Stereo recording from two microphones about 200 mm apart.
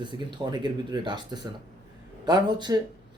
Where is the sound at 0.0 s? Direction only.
25° right (ahead or behind).